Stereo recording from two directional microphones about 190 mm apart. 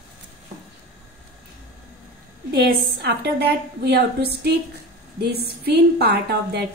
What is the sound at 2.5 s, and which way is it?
A woman's voice, 60° right (ahead or behind).